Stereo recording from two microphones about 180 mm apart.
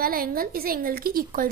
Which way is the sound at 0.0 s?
55° right (ahead or behind).